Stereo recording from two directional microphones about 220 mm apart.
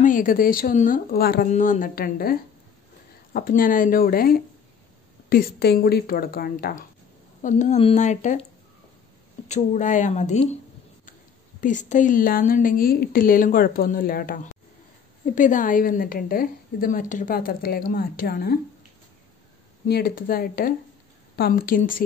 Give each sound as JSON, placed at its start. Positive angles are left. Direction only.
{"t": 0.0, "sound": "a woman's voice", "side_deg": 35}
{"t": 3.3, "sound": "a woman's voice", "side_deg": 40}
{"t": 9.5, "sound": "a woman's voice", "side_deg": 35}
{"t": 11.6, "sound": "a woman's voice", "side_deg": 35}
{"t": 19.9, "sound": "a woman's voice", "side_deg": 40}